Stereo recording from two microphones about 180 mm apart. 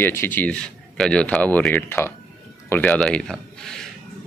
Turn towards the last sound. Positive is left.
turn(degrees=5)  # may be behind; listen again after turning